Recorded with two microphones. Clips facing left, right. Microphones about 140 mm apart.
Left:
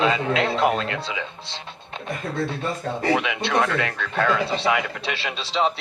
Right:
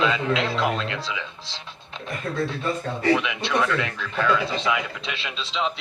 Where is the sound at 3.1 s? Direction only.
45° left (ahead or behind).